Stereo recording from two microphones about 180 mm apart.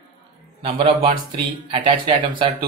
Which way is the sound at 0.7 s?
30° right (ahead or behind).